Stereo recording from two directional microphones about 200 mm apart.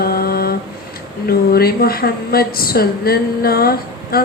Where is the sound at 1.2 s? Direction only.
50° left (ahead or behind).